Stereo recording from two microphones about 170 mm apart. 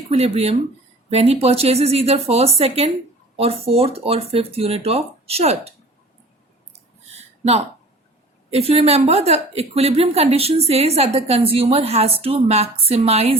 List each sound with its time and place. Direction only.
0.1 s a woman's voice: 35° right (ahead or behind)
7.2 s a sound: 40° right (ahead or behind)
8.4 s a woman's voice: 35° right (ahead or behind)